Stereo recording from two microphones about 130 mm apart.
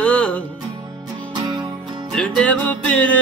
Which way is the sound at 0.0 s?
10° left (ahead or behind).